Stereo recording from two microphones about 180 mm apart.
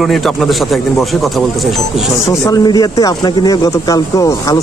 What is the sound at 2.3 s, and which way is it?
Speech, 20° left (ahead or behind).